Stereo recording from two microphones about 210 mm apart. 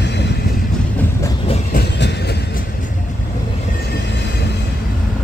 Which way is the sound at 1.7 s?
50° left (ahead or behind).